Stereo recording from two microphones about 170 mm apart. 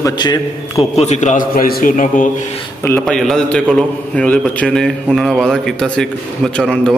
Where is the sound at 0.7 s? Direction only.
40° left (ahead or behind).